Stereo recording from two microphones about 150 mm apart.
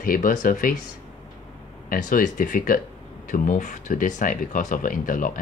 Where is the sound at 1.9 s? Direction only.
65° left (ahead or behind).